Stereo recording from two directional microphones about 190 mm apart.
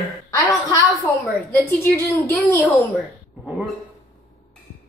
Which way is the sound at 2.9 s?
5° right (ahead or behind).